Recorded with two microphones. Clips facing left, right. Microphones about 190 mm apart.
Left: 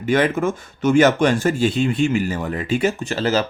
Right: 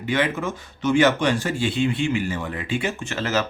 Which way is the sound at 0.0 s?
45° left (ahead or behind).